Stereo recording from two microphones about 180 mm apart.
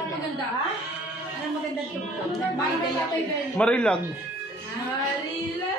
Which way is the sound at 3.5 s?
5° left (ahead or behind).